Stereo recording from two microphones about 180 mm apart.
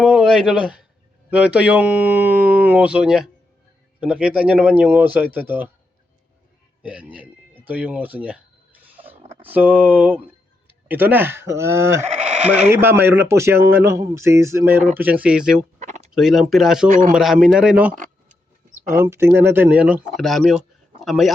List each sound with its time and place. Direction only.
0.0 s speech: 5° right (ahead or behind)
6.8 s speech: 5° right (ahead or behind)
9.4 s speech: 10° right (ahead or behind)
17.9 s a sound: 45° right (ahead or behind)
18.9 s speech: 15° right (ahead or behind)